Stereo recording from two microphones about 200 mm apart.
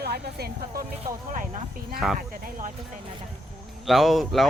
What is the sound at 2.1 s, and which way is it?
Speech, 40° right (ahead or behind).